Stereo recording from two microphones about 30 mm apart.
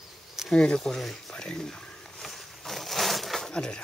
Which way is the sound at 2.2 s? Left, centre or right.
Centre.